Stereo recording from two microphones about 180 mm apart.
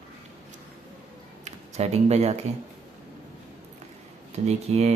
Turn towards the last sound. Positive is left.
turn(degrees=-35)  # may be behind; listen again after turning